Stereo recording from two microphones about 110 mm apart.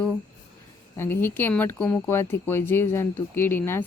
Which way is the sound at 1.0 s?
20° left (ahead or behind).